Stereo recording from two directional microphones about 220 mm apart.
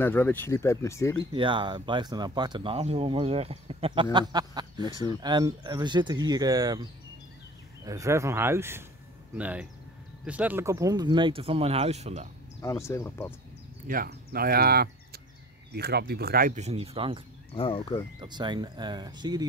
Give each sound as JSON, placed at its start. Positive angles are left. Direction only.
{"t": 0.0, "sound": "speech", "side_deg": 10}
{"t": 1.3, "sound": "speech", "side_deg": -20}
{"t": 12.6, "sound": "speech", "side_deg": 15}
{"t": 13.8, "sound": "speech", "side_deg": -40}
{"t": 17.6, "sound": "speech", "side_deg": 25}
{"t": 18.2, "sound": "speech", "side_deg": -20}